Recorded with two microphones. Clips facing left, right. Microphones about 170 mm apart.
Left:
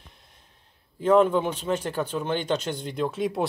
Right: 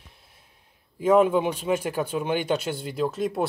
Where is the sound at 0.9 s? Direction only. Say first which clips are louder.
Even; 10° right (ahead or behind).